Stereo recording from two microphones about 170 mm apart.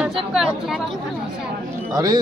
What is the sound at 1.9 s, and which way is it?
Speech, 20° right (ahead or behind).